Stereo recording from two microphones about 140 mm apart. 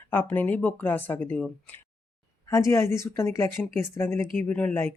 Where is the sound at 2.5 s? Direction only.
20° left (ahead or behind).